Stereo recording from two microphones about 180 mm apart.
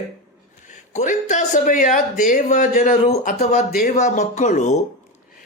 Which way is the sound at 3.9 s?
40° left (ahead or behind).